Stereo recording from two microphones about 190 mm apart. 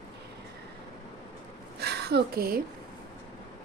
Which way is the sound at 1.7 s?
60° right (ahead or behind).